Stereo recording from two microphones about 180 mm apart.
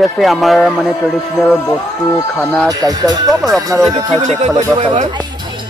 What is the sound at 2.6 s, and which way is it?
Speech, 20° right (ahead or behind).